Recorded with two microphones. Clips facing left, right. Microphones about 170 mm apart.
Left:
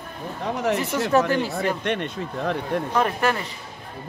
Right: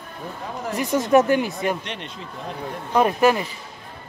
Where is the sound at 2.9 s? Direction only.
15° right (ahead or behind).